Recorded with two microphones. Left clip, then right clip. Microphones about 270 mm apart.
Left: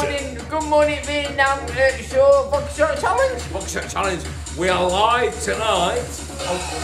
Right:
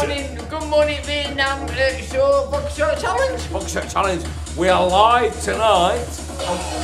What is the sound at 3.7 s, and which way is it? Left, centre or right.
Speech, centre.